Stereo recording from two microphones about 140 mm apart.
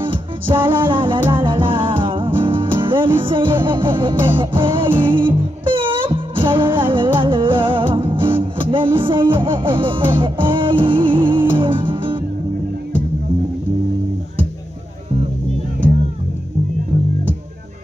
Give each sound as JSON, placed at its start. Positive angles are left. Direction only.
{"t": 0.0, "sound": "music", "side_deg": -40}